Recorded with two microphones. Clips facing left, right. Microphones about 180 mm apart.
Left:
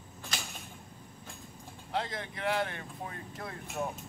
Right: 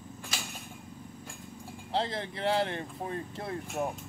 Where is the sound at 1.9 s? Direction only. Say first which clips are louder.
Right 3 dB; 30° right (ahead or behind).